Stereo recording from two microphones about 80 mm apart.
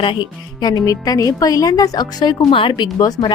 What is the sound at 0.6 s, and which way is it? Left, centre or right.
Speech, left.